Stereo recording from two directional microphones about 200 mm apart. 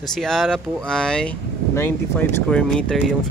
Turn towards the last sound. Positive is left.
turn(degrees=5)  # may be behind; listen again after turning